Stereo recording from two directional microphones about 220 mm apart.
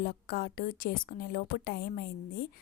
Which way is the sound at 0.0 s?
45° left (ahead or behind).